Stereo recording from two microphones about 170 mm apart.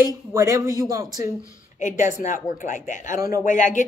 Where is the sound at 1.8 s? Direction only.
45° left (ahead or behind).